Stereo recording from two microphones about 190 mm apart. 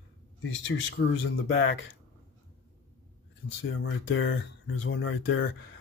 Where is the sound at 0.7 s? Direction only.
90° left.